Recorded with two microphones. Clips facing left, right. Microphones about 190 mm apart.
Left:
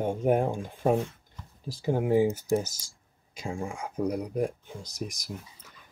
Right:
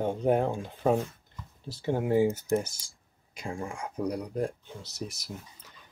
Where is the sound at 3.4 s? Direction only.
10° left (ahead or behind).